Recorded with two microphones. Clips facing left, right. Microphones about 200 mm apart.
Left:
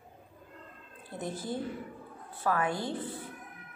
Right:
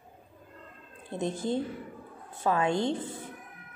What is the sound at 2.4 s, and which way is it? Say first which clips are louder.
Speech: right 4 dB; 25° right (ahead or behind).